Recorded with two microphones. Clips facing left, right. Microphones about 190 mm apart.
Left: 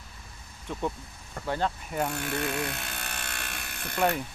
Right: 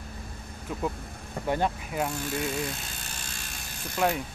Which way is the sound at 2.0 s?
65° left (ahead or behind).